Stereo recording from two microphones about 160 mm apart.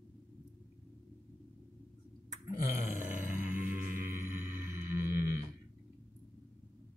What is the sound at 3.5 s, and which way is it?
Music, 10° right (ahead or behind).